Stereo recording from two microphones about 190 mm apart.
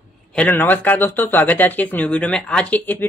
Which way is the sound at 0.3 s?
10° left (ahead or behind).